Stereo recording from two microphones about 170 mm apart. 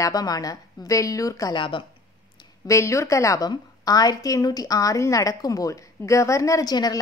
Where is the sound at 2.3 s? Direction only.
20° left (ahead or behind).